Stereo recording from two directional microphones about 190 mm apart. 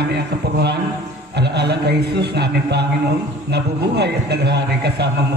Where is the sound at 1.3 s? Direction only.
60° right (ahead or behind).